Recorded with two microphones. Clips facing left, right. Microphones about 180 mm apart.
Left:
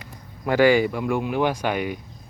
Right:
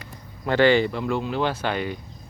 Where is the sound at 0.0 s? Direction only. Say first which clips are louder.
Left 1 dB; 10° left (ahead or behind).